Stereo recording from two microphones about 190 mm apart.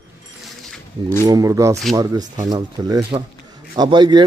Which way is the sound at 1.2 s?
20° right (ahead or behind).